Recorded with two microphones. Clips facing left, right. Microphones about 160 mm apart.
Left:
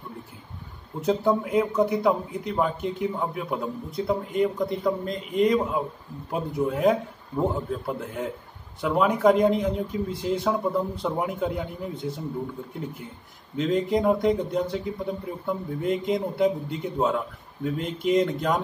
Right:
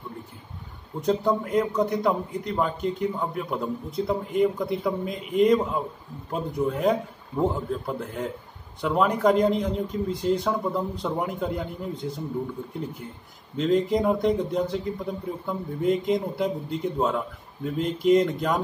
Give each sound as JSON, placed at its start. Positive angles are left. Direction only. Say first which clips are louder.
{"t": 1.0, "sound": "a man's voice", "louder": "left 1 dB", "side_deg": 5}
{"t": 13.6, "sound": "a man's voice", "louder": "right 1 dB", "side_deg": 0}